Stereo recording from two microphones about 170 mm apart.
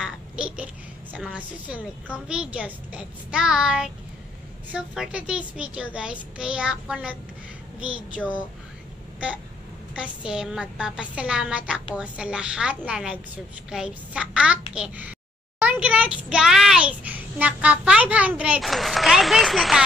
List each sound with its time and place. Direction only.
0.0 s babbling: 5° right (ahead or behind)
1.1 s a child's voice: 5° right (ahead or behind)
8.2 s speech: 10° left (ahead or behind)
9.9 s a child's voice: 5° right (ahead or behind)